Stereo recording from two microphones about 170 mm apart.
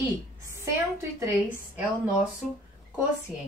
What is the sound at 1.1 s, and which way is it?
Speech, 15° right (ahead or behind).